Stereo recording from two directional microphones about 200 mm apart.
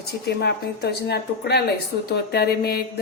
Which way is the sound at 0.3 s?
55° left (ahead or behind).